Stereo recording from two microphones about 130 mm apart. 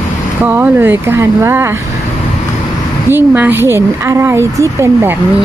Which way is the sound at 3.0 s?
15° right (ahead or behind).